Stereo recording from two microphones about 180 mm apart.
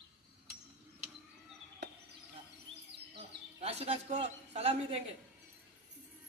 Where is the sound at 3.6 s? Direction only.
35° right (ahead or behind).